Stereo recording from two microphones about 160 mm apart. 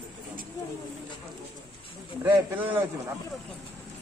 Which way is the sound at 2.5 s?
10° right (ahead or behind).